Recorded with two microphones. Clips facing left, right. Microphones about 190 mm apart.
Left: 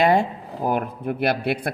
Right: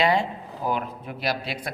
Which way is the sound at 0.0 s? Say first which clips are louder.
Left 4 dB; 50° left (ahead or behind).